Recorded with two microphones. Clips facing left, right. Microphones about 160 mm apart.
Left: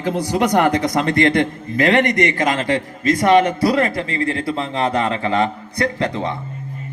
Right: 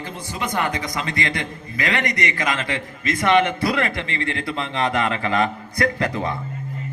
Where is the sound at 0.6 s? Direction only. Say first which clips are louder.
Left 9 dB; 60° left (ahead or behind); by 6.3 s 30° left (ahead or behind).